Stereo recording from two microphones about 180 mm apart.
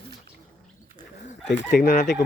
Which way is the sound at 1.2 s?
40° left (ahead or behind).